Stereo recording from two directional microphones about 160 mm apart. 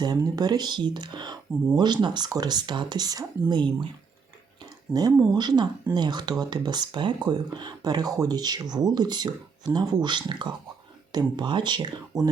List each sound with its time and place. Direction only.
0.0 s speech: 25° right (ahead or behind)
4.9 s speech: 5° right (ahead or behind)
5.3 s speech: 25° right (ahead or behind)